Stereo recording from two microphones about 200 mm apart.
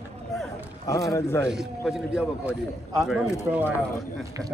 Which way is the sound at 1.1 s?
15° left (ahead or behind).